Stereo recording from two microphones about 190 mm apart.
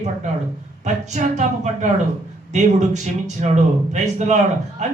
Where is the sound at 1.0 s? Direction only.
40° right (ahead or behind).